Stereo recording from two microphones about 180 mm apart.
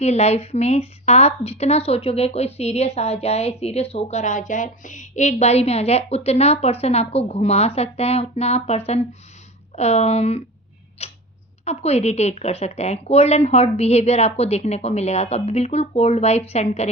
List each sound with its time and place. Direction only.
0.0 s speech: 35° left (ahead or behind)
11.0 s tick-tock: 35° left (ahead or behind)
11.6 s speech: 35° left (ahead or behind)